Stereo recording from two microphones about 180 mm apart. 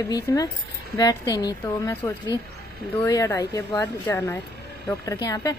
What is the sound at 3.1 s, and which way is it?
A woman's voice, 20° left (ahead or behind).